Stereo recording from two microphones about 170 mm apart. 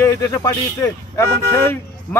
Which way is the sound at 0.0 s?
20° left (ahead or behind).